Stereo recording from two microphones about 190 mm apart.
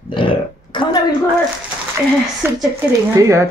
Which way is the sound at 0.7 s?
25° left (ahead or behind).